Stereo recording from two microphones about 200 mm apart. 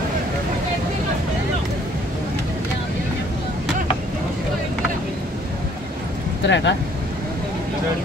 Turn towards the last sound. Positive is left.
turn(degrees=60)  # may be behind; listen again after turning